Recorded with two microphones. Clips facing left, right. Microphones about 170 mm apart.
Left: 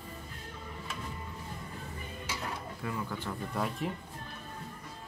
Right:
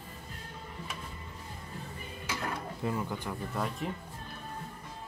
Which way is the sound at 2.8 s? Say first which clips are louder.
Right 3 dB; 25° right (ahead or behind).